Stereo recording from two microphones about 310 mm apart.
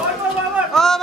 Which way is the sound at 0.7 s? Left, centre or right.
Centre.